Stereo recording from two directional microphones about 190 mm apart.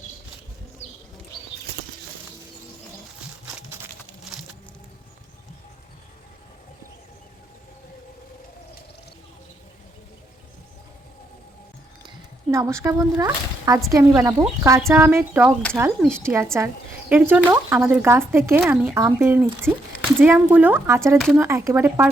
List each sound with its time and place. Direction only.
4.2 s a sound: centre (ahead or behind)
12.0 s speech: 15° right (ahead or behind)
21.2 s speech: centre (ahead or behind)
21.4 s speech: 15° right (ahead or behind)